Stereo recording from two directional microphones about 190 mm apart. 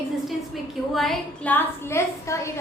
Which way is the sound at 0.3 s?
Centre (ahead or behind).